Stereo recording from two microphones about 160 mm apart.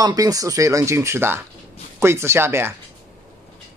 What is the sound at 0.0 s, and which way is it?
Speech, 20° right (ahead or behind).